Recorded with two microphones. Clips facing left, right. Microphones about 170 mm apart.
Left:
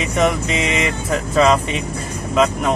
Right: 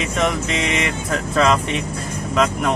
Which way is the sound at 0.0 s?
Centre (ahead or behind).